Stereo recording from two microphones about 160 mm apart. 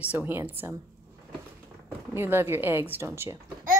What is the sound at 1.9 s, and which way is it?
Speech, 15° right (ahead or behind).